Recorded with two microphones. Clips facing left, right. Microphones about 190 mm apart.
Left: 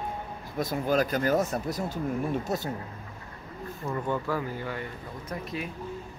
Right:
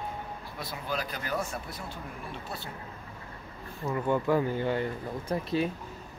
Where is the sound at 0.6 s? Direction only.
45° left (ahead or behind).